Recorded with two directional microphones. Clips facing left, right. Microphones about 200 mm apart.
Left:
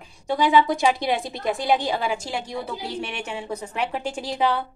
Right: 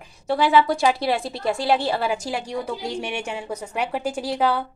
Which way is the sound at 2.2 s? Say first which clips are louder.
Right 3 dB; 10° right (ahead or behind).